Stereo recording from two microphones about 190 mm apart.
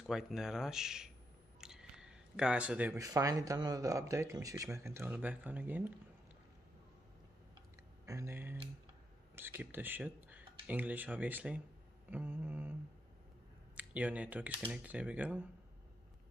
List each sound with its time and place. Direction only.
0.0 s speech: centre (ahead or behind)
8.0 s speech: 15° right (ahead or behind)
13.7 s speech: 5° right (ahead or behind)